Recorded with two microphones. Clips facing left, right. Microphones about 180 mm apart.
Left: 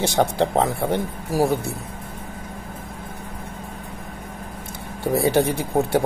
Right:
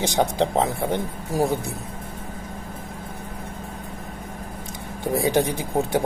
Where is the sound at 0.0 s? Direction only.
15° right (ahead or behind).